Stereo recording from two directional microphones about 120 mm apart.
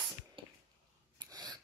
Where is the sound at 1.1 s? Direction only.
35° right (ahead or behind).